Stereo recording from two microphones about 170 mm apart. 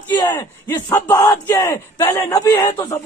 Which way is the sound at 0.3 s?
25° left (ahead or behind).